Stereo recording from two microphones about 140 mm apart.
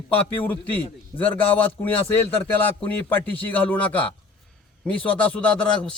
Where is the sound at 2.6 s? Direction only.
15° left (ahead or behind).